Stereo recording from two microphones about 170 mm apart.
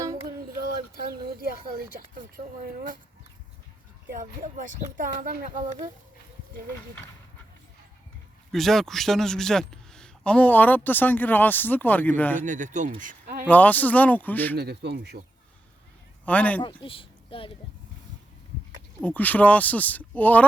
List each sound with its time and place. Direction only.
4.1 s speech: 50° right (ahead or behind)
8.5 s a man's voice: centre (ahead or behind)
12.4 s speech: 45° right (ahead or behind)
13.5 s a man's voice: 10° left (ahead or behind)
14.5 s speech: 70° right (ahead or behind)
16.2 s speech: 10° left (ahead or behind)
16.6 s speech: 30° left (ahead or behind)
19.0 s a man's voice: 10° left (ahead or behind)